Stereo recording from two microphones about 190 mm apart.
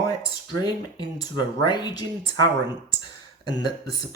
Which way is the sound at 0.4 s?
20° left (ahead or behind).